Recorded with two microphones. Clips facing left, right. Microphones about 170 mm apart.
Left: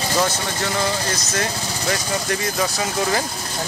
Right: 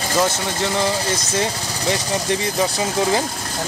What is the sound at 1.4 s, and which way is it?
Speech, 25° right (ahead or behind).